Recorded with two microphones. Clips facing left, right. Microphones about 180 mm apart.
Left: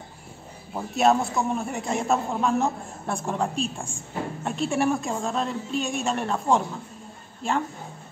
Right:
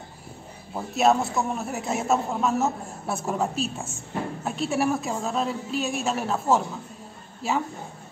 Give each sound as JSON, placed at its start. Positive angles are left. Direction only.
{"t": 0.7, "sound": "a man's voice", "side_deg": 0}